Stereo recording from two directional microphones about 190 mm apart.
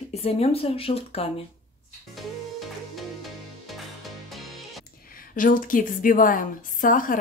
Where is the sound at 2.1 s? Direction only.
Centre (ahead or behind).